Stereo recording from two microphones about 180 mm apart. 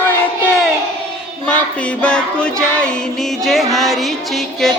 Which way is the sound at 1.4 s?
5° left (ahead or behind).